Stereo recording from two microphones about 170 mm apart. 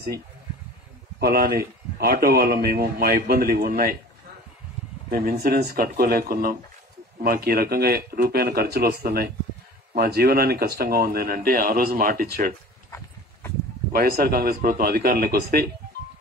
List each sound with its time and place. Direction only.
1.2 s speech: 65° right (ahead or behind)
5.1 s speech: 65° right (ahead or behind)
13.9 s speech: 60° right (ahead or behind)